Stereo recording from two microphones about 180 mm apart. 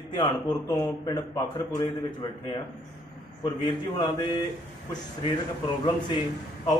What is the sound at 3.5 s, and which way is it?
Speech, 25° left (ahead or behind).